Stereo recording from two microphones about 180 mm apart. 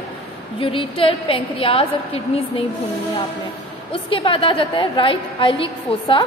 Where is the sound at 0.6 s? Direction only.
30° left (ahead or behind).